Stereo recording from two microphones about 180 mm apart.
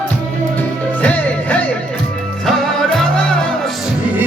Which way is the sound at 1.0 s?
10° left (ahead or behind).